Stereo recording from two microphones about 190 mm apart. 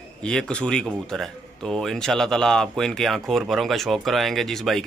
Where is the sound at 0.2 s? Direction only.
5° left (ahead or behind).